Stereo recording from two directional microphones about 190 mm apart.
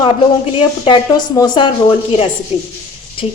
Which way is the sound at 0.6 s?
25° left (ahead or behind).